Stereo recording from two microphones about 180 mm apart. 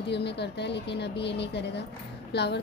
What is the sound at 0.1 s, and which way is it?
A child's voice, 70° left (ahead or behind).